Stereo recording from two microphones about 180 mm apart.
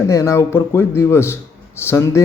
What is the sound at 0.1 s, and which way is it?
A man's voice, 15° left (ahead or behind).